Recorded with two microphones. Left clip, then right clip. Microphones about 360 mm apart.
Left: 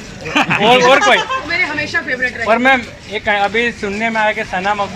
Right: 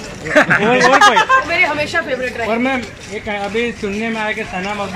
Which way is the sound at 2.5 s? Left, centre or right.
Left.